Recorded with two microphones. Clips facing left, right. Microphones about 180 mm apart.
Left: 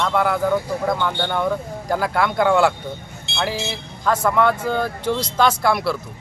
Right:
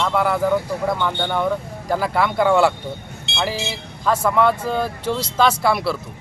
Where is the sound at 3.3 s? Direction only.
70° right (ahead or behind).